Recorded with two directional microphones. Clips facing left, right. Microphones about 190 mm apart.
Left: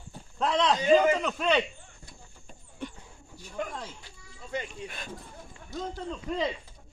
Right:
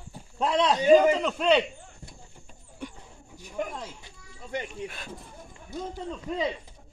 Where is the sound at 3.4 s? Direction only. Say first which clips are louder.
Right 2 dB; 15° right (ahead or behind).